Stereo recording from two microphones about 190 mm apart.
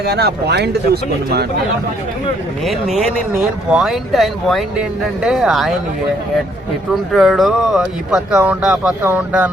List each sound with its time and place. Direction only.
0.0 s speech: 55° right (ahead or behind)
3.7 s speech: centre (ahead or behind)
6.9 s speech: centre (ahead or behind)